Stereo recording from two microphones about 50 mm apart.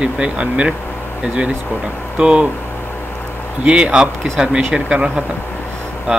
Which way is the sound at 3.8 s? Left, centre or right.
Centre.